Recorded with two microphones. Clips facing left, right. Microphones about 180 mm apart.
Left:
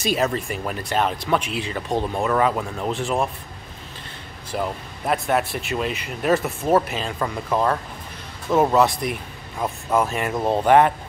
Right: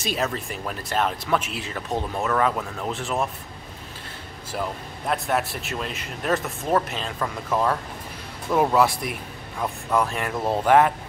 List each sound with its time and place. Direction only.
0.0 s speech: centre (ahead or behind)
4.5 s speech: centre (ahead or behind)
8.7 s a man's voice: 5° right (ahead or behind)
10.3 s speech: 20° left (ahead or behind)
10.6 s speech: centre (ahead or behind)